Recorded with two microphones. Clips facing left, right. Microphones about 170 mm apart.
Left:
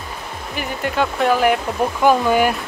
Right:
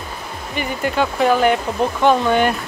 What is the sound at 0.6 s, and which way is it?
Speech, centre (ahead or behind).